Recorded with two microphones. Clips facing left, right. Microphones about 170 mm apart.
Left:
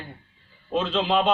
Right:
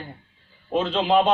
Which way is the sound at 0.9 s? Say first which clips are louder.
Right 4 dB; 45° right (ahead or behind).